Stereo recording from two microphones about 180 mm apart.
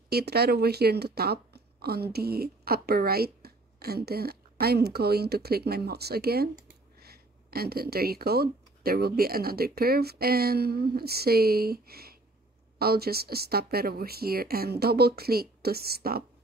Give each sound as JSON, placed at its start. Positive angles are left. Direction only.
{"t": 0.1, "sound": "speech", "side_deg": -60}